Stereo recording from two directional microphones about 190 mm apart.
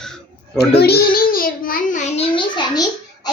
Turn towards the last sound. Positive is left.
turn(degrees=20)  # may be behind; listen again after turning